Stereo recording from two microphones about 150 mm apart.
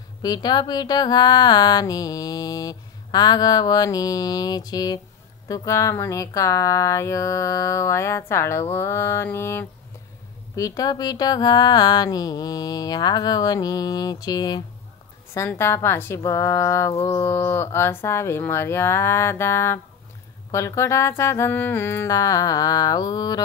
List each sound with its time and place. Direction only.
0.2 s speech: 25° left (ahead or behind)